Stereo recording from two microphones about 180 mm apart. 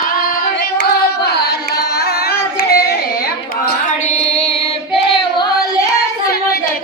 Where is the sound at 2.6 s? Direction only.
60° left (ahead or behind).